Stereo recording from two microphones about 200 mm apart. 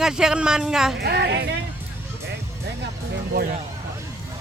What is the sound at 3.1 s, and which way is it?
Music, 55° right (ahead or behind).